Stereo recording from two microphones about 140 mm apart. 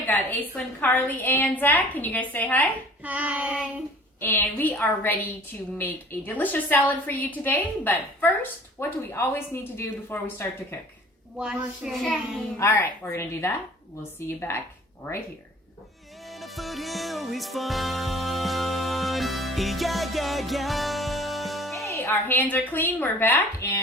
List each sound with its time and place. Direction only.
0.0 s a woman's voice: 10° left (ahead or behind)
3.0 s child singing: 10° right (ahead or behind)
4.2 s a woman's voice: 15° left (ahead or behind)
11.3 s child singing: 5° right (ahead or behind)
12.5 s a woman's voice: 10° left (ahead or behind)
16.2 s music: centre (ahead or behind)
21.8 s a woman's voice: 20° left (ahead or behind)